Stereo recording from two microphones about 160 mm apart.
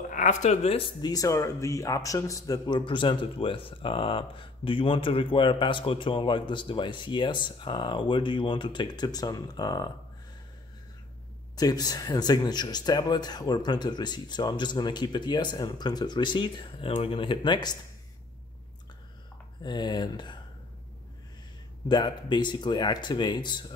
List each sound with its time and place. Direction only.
0.1 s speech: 50° left (ahead or behind); by 9.8 s 25° left (ahead or behind)
11.5 s speech: 25° left (ahead or behind)
19.6 s speech: 25° left (ahead or behind)
21.8 s speech: 30° left (ahead or behind)